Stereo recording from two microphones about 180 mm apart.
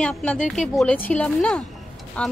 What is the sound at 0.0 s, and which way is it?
A woman's voice, 5° left (ahead or behind).